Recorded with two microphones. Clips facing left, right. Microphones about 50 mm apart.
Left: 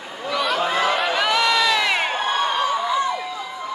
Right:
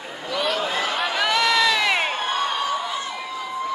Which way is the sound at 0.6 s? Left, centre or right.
Left.